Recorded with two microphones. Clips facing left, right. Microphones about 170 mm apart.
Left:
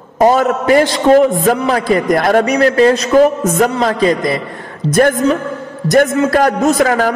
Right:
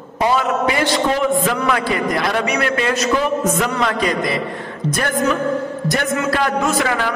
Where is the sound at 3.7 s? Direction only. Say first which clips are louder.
Left 6 dB; 30° left (ahead or behind).